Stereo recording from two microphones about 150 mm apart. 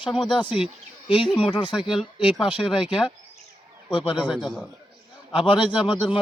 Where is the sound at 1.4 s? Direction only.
35° left (ahead or behind).